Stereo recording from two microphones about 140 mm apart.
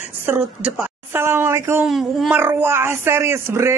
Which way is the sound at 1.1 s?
15° right (ahead or behind).